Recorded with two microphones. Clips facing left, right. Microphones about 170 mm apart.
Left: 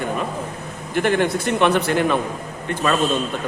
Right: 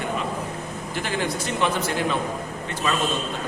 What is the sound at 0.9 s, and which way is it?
A man's voice, 60° left (ahead or behind).